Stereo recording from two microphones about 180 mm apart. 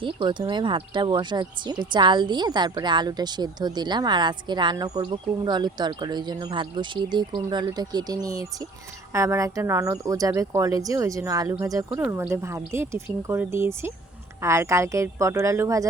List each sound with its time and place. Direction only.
0.0 s speech: 25° right (ahead or behind)